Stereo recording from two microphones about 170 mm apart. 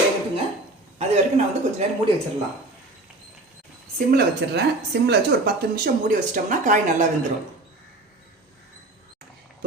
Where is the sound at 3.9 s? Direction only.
75° right (ahead or behind).